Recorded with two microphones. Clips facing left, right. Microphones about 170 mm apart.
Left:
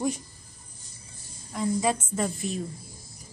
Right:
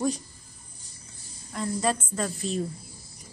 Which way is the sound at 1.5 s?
15° left (ahead or behind).